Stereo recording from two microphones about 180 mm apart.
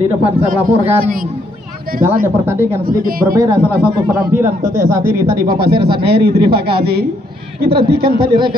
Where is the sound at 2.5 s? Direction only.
15° right (ahead or behind).